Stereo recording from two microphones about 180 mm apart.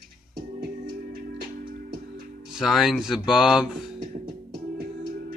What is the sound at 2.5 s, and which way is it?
Speech, centre (ahead or behind).